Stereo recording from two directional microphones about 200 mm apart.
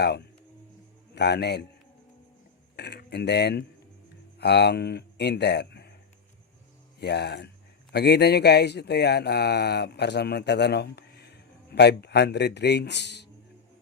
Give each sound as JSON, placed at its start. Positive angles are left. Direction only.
{"t": 1.1, "sound": "speech", "side_deg": 55}
{"t": 2.7, "sound": "speech", "side_deg": 55}
{"t": 7.0, "sound": "speech", "side_deg": 55}